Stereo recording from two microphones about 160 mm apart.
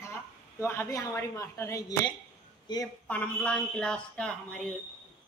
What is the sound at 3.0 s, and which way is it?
Speech, 10° left (ahead or behind).